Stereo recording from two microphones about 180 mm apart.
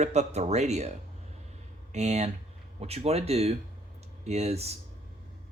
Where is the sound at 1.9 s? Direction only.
35° right (ahead or behind).